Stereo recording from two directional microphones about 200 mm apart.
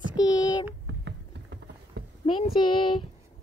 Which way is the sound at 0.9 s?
65° right (ahead or behind).